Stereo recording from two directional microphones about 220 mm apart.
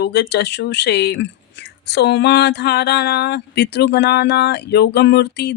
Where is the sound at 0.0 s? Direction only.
50° left (ahead or behind).